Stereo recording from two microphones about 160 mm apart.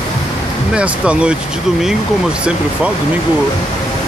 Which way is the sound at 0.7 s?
5° right (ahead or behind).